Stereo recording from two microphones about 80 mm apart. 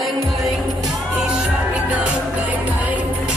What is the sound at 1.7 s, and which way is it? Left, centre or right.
Music, centre.